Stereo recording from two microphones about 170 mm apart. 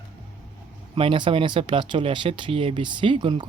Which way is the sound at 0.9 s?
30° right (ahead or behind).